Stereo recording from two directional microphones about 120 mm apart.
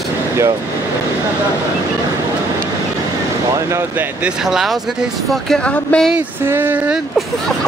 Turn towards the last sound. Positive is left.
turn(degrees=-15)  # may be behind; listen again after turning